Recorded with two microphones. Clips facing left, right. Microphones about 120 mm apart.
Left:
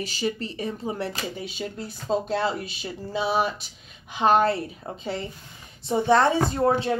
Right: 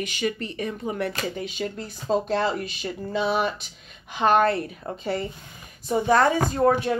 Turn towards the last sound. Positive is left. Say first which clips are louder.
# right 1 dB
turn(degrees=25)  # may be behind; listen again after turning